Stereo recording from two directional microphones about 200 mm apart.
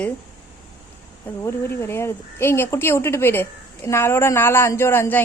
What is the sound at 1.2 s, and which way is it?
Speech, 10° left (ahead or behind).